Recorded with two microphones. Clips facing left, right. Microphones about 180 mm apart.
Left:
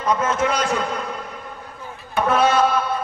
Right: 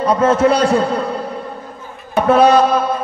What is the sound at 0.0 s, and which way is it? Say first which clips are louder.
A man's voice: right 8 dB; 35° right (ahead or behind).